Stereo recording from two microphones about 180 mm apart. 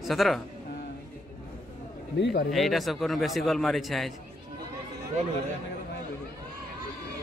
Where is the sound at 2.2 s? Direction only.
70° left (ahead or behind).